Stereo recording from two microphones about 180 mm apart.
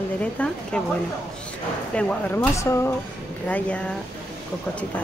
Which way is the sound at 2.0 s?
5° left (ahead or behind).